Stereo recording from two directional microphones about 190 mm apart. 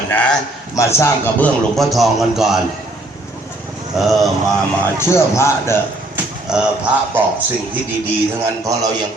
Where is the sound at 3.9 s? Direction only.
Centre (ahead or behind).